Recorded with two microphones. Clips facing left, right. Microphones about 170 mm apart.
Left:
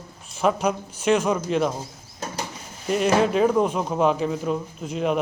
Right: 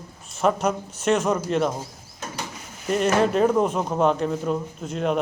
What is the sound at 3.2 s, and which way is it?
A man's voice, centre (ahead or behind).